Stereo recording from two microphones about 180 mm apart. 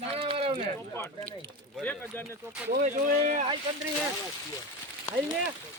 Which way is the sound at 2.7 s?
50° right (ahead or behind).